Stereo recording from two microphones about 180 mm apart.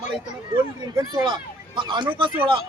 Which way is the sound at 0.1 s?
25° right (ahead or behind).